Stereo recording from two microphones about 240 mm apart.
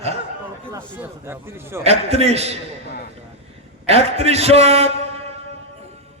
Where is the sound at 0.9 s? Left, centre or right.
Centre.